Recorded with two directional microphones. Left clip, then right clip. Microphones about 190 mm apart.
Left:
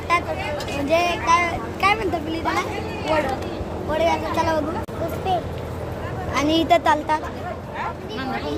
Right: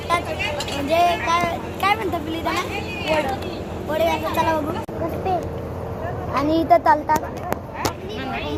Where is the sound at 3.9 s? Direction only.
10° right (ahead or behind).